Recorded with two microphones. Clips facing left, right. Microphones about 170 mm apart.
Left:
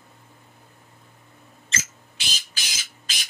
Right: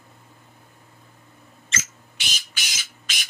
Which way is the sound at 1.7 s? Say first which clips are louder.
Even; 35° left (ahead or behind).